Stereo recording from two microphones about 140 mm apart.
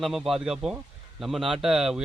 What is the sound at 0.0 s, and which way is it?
Speech, centre (ahead or behind).